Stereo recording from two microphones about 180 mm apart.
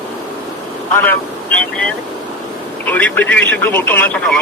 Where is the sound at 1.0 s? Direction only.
10° left (ahead or behind).